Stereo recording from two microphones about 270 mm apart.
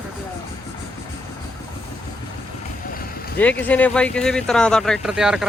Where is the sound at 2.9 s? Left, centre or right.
Left.